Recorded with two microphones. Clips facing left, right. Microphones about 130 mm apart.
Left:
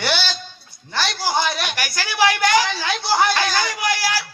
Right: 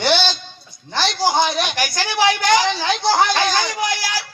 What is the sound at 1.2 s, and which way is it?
A man's voice, 20° right (ahead or behind).